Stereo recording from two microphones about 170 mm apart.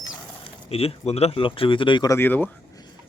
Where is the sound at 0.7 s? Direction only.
35° left (ahead or behind).